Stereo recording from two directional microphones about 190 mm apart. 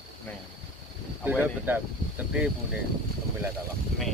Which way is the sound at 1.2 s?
10° right (ahead or behind).